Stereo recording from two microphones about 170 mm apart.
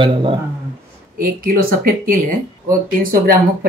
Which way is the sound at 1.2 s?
55° right (ahead or behind).